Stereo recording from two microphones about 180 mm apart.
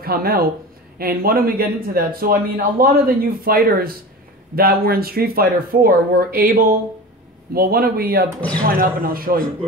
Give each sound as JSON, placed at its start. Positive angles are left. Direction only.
{"t": 0.0, "sound": "a man's voice", "side_deg": -55}
{"t": 7.5, "sound": "a man's voice", "side_deg": -55}